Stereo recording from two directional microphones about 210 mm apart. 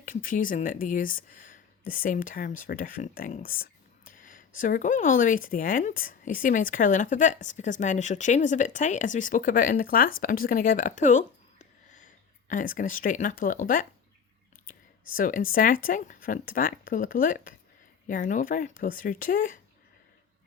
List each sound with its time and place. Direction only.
0.0 s speech: 40° left (ahead or behind)